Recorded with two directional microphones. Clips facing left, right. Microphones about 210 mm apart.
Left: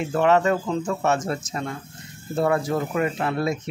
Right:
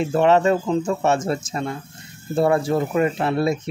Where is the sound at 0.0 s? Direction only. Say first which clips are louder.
Right 3 dB; 25° right (ahead or behind).